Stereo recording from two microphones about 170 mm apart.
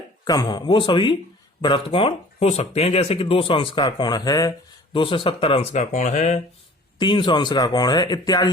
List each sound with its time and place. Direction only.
0.3 s speech: 25° left (ahead or behind); by 6.4 s 45° left (ahead or behind)
7.0 s speech: 30° left (ahead or behind)